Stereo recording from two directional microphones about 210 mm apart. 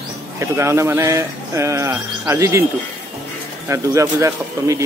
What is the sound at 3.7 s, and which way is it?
Speech, 15° right (ahead or behind).